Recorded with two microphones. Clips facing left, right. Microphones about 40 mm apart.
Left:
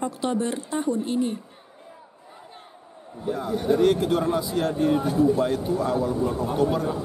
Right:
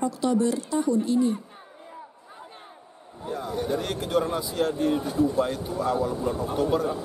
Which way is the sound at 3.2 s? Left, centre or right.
Centre.